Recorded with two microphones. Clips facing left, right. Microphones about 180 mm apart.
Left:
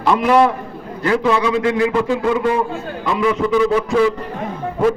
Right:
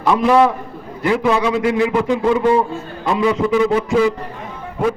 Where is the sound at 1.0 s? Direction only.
20° right (ahead or behind).